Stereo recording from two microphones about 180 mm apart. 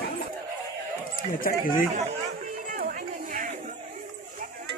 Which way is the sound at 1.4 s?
50° left (ahead or behind).